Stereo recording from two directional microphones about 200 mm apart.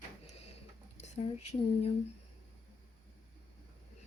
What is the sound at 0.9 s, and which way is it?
Speech, 35° left (ahead or behind).